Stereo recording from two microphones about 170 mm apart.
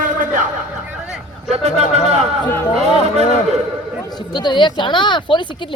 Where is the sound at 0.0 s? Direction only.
50° right (ahead or behind).